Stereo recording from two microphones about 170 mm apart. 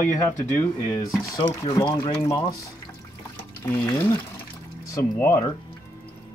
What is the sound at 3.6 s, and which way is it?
Speech, 15° left (ahead or behind).